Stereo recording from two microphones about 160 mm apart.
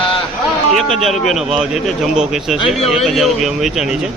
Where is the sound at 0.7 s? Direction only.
Centre (ahead or behind).